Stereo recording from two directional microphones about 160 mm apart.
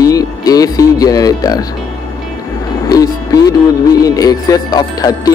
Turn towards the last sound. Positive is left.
turn(degrees=25)  # may be behind; listen again after turning